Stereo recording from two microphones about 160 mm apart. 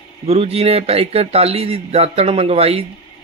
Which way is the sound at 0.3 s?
40° right (ahead or behind).